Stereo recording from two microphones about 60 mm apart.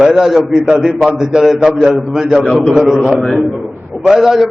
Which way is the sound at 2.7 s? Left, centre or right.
Centre.